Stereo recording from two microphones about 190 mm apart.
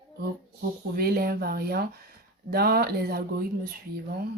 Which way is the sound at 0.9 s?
50° right (ahead or behind).